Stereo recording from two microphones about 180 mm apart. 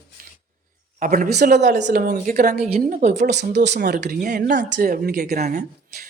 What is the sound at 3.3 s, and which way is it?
Speech, 70° right (ahead or behind).